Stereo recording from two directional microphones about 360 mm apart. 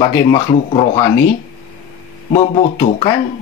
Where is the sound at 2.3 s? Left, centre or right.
Centre.